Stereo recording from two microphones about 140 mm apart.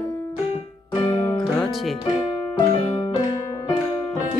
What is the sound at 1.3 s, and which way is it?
Music, centre (ahead or behind).